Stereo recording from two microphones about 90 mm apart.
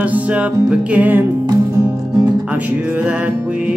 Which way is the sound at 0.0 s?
15° right (ahead or behind).